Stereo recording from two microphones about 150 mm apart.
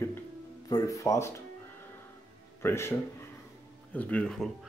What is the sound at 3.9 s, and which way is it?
Speech, 10° left (ahead or behind).